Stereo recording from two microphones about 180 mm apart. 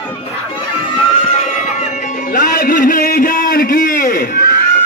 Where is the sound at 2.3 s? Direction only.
55° left (ahead or behind).